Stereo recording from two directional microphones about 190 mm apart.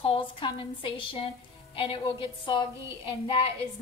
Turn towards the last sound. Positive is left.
turn(degrees=25)  # may be behind; listen again after turning